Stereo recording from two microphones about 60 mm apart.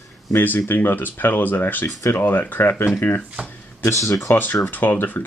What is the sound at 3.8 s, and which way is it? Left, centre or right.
Speech, left.